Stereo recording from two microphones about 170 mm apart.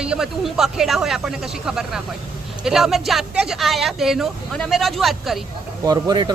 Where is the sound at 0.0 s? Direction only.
5° right (ahead or behind).